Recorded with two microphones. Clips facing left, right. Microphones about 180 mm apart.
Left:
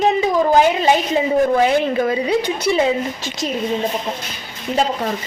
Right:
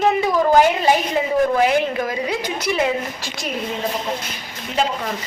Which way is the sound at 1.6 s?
25° left (ahead or behind).